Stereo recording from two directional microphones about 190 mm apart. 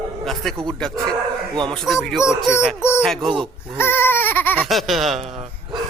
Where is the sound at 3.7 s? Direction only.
10° left (ahead or behind).